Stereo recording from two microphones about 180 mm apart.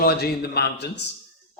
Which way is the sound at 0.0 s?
60° left (ahead or behind).